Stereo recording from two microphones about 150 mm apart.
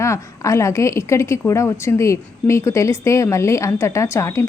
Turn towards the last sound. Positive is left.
turn(degrees=20)  # may be behind; listen again after turning